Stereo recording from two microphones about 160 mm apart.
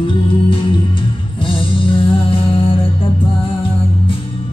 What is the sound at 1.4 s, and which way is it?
Music, 35° left (ahead or behind).